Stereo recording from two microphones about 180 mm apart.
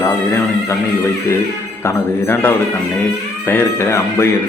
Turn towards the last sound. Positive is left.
turn(degrees=15)  # may be behind; listen again after turning